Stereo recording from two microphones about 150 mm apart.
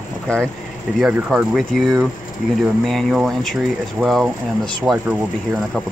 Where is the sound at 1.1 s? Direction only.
5° right (ahead or behind).